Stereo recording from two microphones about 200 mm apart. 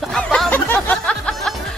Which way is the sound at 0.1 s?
5° left (ahead or behind).